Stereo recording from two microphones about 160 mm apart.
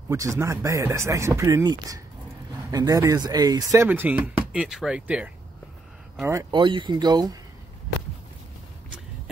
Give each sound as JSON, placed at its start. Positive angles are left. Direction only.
{"t": 0.1, "sound": "speech", "side_deg": -20}
{"t": 6.5, "sound": "speech", "side_deg": -30}